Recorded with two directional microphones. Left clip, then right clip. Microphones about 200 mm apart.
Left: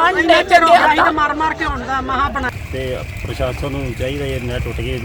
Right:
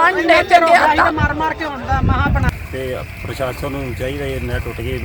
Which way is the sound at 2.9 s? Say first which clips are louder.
Even; centre (ahead or behind).